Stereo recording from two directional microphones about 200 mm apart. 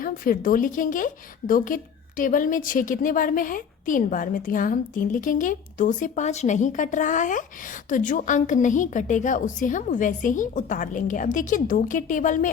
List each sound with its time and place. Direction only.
0.0 s a woman's voice: 45° left (ahead or behind)